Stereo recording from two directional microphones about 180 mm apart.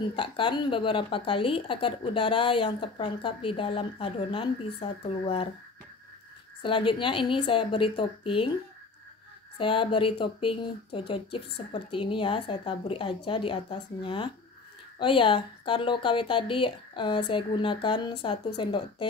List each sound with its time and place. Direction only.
0.1 s a woman's voice: 25° left (ahead or behind)
6.6 s a woman's voice: 30° left (ahead or behind)
9.6 s a woman's voice: 30° left (ahead or behind)